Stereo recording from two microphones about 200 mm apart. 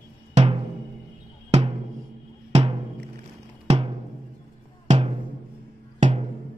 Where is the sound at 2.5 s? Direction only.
30° right (ahead or behind).